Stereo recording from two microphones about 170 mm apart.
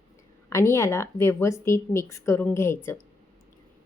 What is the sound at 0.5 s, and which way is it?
A woman's voice, 15° left (ahead or behind).